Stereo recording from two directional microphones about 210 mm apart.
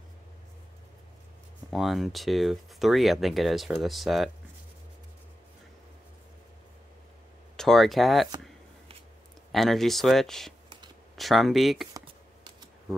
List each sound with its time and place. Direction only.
1.7 s speech: centre (ahead or behind)
7.5 s speech: centre (ahead or behind)
9.5 s speech: centre (ahead or behind)
11.9 s a sound: 20° right (ahead or behind)